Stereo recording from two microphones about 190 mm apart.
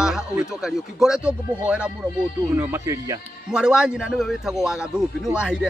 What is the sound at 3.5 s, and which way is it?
A man's voice, 5° right (ahead or behind).